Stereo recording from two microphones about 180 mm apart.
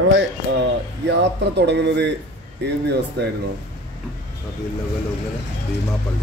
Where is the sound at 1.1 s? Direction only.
70° right (ahead or behind).